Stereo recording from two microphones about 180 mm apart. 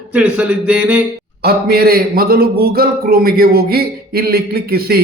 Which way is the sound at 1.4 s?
60° right (ahead or behind).